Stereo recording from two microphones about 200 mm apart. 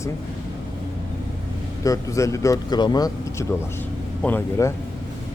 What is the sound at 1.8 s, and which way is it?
Speech, 15° left (ahead or behind).